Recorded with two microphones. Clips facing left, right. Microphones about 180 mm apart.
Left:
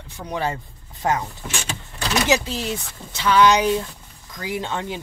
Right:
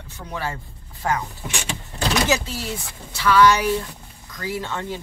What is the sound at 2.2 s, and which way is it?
Speech, 15° left (ahead or behind).